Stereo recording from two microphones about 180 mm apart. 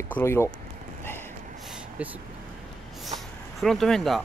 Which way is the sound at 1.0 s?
10° left (ahead or behind).